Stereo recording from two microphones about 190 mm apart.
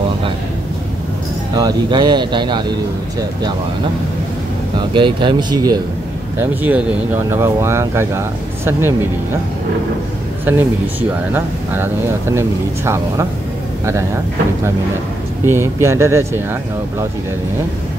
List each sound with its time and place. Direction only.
1.5 s speech: 20° right (ahead or behind)
4.7 s speech: 25° right (ahead or behind)
6.4 s speech: 10° right (ahead or behind)
10.4 s speech: 10° right (ahead or behind)
15.4 s speech: 15° right (ahead or behind)